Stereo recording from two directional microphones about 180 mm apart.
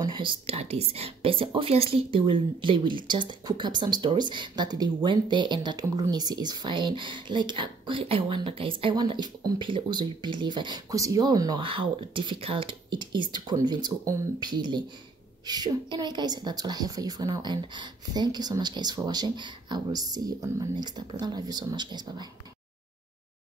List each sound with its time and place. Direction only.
0.0 s speech: 25° right (ahead or behind)